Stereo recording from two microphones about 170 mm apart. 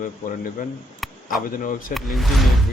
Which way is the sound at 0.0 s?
55° left (ahead or behind).